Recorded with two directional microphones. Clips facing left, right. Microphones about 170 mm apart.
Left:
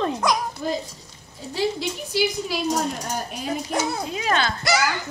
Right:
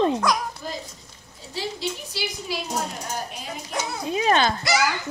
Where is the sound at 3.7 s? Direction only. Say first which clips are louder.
Right 3 dB; 20° right (ahead or behind).